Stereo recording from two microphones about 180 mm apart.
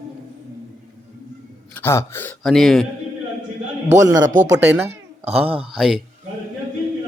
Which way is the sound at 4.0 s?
20° right (ahead or behind).